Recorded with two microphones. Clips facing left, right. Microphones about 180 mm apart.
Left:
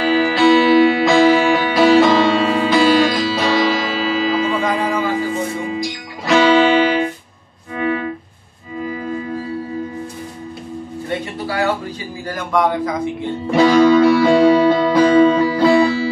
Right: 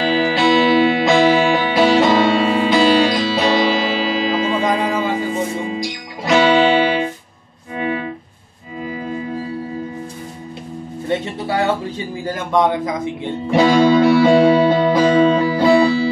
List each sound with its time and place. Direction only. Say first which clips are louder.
0.4 s music: left 3 dB; 25° right (ahead or behind)
11.1 s music: right 3 dB; 25° right (ahead or behind)
12.3 s a man's voice: right 1 dB; 20° right (ahead or behind)
13.6 s music: left 1 dB; 25° right (ahead or behind)